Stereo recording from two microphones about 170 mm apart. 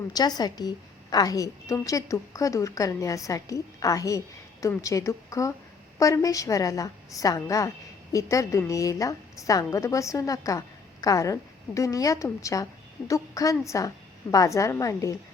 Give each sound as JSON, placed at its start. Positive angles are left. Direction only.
{"t": 0.1, "sound": "a woman's voice", "side_deg": 25}